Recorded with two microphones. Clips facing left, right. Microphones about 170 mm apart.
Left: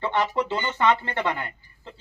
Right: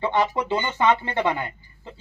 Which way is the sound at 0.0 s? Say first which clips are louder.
Right 2 dB; 15° right (ahead or behind).